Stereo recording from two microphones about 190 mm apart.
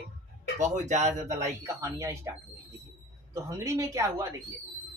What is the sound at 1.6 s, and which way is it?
Speech, 15° right (ahead or behind).